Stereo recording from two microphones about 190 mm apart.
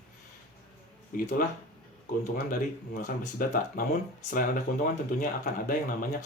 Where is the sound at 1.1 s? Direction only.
50° left (ahead or behind).